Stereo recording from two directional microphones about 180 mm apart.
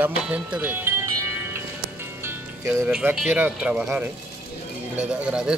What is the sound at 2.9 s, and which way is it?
Speech, 5° right (ahead or behind).